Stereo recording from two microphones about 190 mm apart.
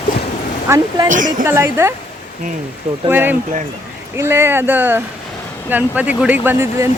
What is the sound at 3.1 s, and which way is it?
Speech, 10° right (ahead or behind).